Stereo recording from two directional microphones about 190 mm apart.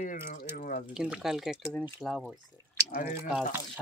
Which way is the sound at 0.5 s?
45° left (ahead or behind).